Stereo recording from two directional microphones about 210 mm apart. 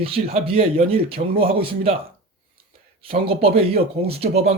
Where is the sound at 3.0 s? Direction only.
25° right (ahead or behind).